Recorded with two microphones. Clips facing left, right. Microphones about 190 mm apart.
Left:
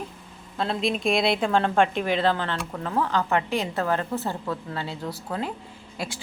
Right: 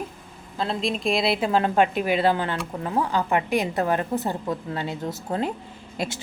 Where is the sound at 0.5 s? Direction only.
Centre (ahead or behind).